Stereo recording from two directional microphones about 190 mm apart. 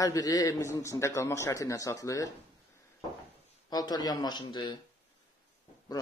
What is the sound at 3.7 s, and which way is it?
Speech, 20° left (ahead or behind).